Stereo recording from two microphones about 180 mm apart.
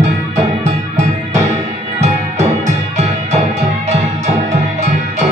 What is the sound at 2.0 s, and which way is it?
Music, 40° right (ahead or behind).